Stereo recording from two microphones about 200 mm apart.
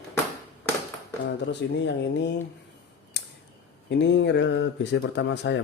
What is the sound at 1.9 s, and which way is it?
Speech, 60° left (ahead or behind).